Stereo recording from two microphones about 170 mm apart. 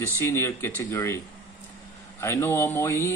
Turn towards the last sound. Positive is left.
turn(degrees=15)  # may be behind; listen again after turning